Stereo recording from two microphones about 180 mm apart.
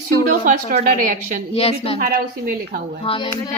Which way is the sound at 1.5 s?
35° left (ahead or behind).